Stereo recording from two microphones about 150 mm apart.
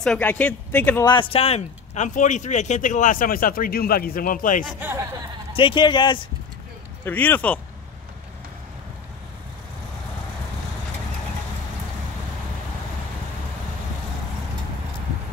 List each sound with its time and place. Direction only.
0.0 s speech: 10° left (ahead or behind)
1.0 s a man's voice: 35° left (ahead or behind)
2.0 s a man's voice: 55° left (ahead or behind)
4.7 s speech: 15° right (ahead or behind)
5.6 s a man's voice: 30° left (ahead or behind)
7.1 s speech: 10° left (ahead or behind)